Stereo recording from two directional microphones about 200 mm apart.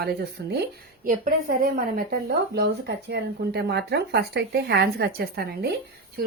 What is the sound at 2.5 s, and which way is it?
Speech, 55° right (ahead or behind).